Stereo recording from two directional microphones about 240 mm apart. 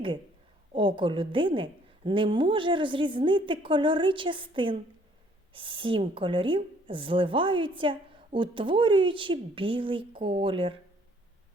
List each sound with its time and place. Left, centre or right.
0.7 s a woman's voice: right